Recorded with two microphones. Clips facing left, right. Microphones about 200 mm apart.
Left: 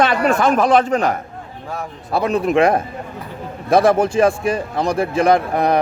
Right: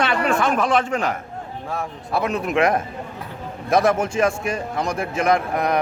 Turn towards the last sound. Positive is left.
turn(degrees=30)  # may be behind; listen again after turning